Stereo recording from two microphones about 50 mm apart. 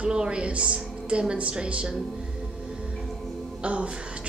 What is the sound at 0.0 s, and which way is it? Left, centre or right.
A woman's voice, centre.